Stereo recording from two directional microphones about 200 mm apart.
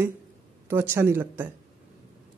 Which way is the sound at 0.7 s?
10° right (ahead or behind).